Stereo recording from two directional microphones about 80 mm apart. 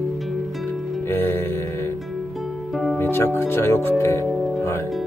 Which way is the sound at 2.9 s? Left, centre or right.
Left.